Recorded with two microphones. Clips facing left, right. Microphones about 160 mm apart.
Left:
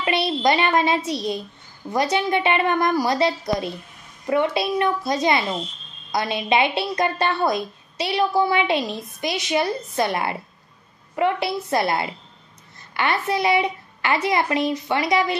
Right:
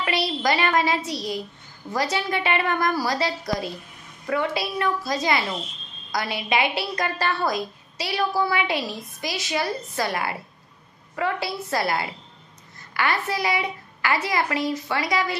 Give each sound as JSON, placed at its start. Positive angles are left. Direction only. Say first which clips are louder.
{"t": 0.0, "sound": "a woman's voice", "louder": "left 4 dB", "side_deg": 25}